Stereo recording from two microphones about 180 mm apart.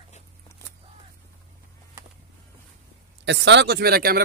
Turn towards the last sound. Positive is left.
turn(degrees=-55)  # may be behind; listen again after turning